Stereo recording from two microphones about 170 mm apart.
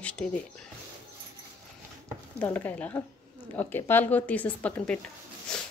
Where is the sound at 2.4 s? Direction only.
10° left (ahead or behind).